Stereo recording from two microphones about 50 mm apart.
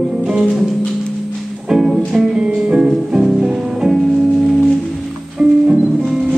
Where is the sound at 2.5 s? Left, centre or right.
Centre.